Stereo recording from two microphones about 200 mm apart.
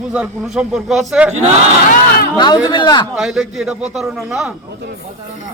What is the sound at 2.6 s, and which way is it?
Speech, 20° left (ahead or behind).